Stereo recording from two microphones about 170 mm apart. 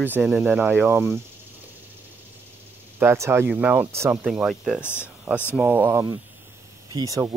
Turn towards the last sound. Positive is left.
turn(degrees=-20)  # may be behind; listen again after turning